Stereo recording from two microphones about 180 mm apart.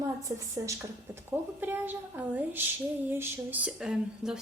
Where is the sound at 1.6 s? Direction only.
10° right (ahead or behind).